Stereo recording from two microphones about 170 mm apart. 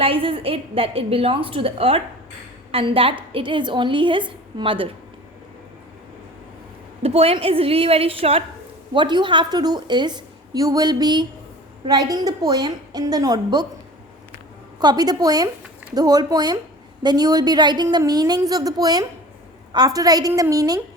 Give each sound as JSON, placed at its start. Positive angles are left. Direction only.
{"t": 0.0, "sound": "a woman's voice", "side_deg": -30}
{"t": 7.0, "sound": "a woman's voice", "side_deg": -35}
{"t": 14.8, "sound": "a woman's voice", "side_deg": -25}